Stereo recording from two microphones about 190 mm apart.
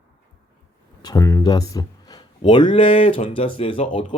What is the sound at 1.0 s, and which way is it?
Speech, 15° left (ahead or behind).